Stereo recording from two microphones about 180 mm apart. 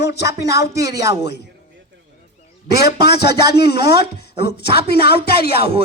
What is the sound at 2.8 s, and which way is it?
Speech, 65° left (ahead or behind).